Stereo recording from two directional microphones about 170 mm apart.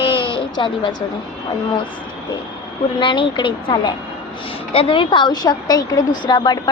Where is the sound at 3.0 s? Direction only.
30° left (ahead or behind).